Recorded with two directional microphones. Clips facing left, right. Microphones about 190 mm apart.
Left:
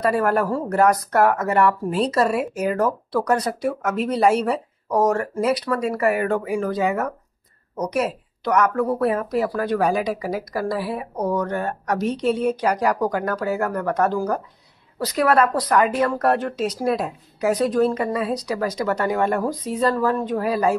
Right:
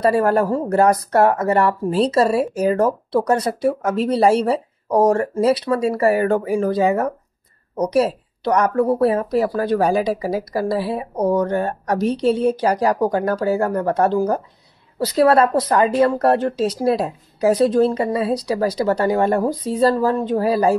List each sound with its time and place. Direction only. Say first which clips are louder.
0.0 s speech: right 4 dB; 30° right (ahead or behind)